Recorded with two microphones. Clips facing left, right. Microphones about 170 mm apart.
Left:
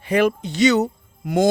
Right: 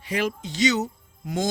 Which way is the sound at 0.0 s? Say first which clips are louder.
Left 8 dB; 55° left (ahead or behind).